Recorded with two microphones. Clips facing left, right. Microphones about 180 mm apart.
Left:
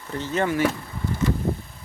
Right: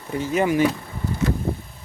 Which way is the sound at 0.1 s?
10° right (ahead or behind).